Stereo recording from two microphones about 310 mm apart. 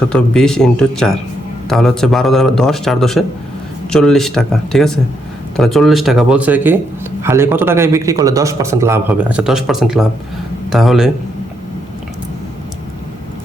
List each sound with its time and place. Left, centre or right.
0.1 s a man's voice: centre